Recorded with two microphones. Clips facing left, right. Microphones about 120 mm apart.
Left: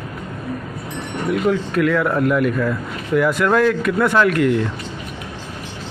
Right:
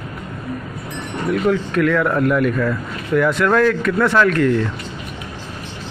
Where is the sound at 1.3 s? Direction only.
5° left (ahead or behind).